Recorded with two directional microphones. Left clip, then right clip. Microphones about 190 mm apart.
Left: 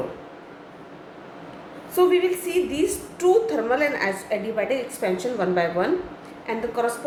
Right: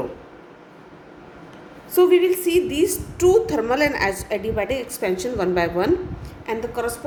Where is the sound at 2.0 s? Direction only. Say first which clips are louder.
Right 3 dB; 50° right (ahead or behind).